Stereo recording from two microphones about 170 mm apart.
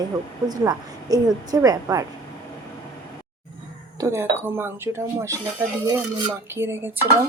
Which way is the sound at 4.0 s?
15° right (ahead or behind).